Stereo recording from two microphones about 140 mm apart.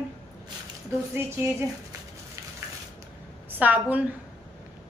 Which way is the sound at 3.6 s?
10° right (ahead or behind).